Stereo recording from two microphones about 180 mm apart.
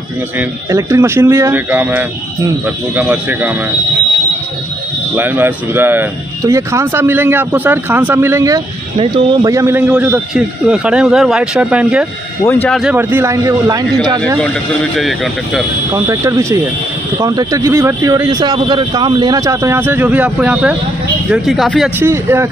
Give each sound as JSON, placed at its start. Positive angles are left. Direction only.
{"t": 0.4, "sound": "speech", "side_deg": -15}
{"t": 5.1, "sound": "speech", "side_deg": -10}
{"t": 8.9, "sound": "speech", "side_deg": -30}
{"t": 12.9, "sound": "speech", "side_deg": -15}
{"t": 14.4, "sound": "speech", "side_deg": 0}
{"t": 15.9, "sound": "speech", "side_deg": -15}
{"t": 22.0, "sound": "speech", "side_deg": -15}